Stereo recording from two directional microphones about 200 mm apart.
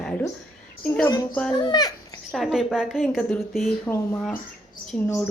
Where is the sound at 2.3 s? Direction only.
Centre (ahead or behind).